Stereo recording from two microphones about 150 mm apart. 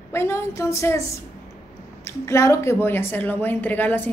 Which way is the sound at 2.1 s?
20° left (ahead or behind).